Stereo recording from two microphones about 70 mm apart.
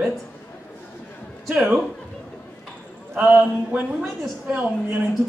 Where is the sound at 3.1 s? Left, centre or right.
Centre.